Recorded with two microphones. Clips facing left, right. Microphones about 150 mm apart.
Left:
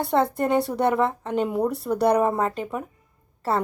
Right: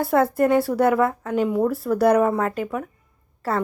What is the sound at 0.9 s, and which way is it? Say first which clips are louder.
Speech: right 2 dB; 25° left (ahead or behind).